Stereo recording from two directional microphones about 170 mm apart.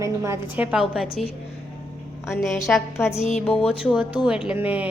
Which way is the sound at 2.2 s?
Centre (ahead or behind).